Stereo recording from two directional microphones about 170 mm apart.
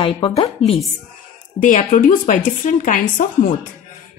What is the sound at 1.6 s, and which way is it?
Speech, 50° left (ahead or behind).